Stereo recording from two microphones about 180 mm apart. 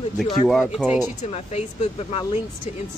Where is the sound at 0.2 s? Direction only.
Centre (ahead or behind).